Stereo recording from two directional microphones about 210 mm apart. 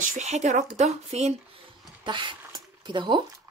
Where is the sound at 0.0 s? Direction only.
35° right (ahead or behind).